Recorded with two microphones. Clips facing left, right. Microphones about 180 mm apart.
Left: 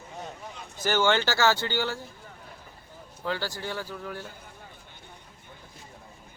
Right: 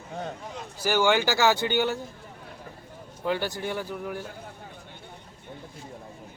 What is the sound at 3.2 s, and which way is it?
Speech, 20° right (ahead or behind).